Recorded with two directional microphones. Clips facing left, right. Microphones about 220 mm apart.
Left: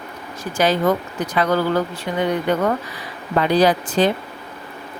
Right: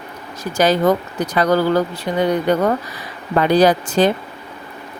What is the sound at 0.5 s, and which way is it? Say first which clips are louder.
Speech: right 3 dB; 40° right (ahead or behind).